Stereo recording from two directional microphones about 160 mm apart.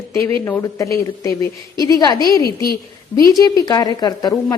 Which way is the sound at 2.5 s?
75° left (ahead or behind).